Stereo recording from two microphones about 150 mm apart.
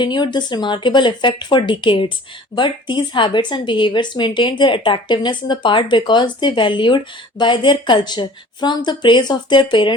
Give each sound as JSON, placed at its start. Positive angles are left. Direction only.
{"t": 0.0, "sound": "speech", "side_deg": 30}